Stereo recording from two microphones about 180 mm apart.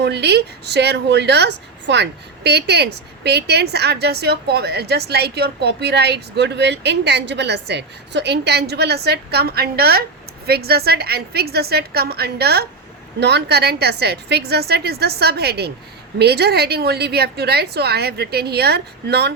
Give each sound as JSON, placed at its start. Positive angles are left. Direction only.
{"t": 0.0, "sound": "a woman's voice", "side_deg": -70}